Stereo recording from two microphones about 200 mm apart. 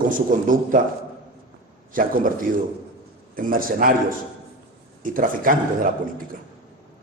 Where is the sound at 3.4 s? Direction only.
45° right (ahead or behind).